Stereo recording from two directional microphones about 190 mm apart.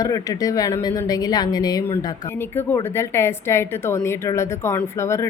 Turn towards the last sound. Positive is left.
turn(degrees=15)  # may be behind; listen again after turning